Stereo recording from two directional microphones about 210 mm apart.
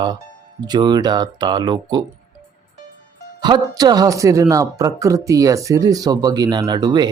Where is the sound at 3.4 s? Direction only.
20° right (ahead or behind).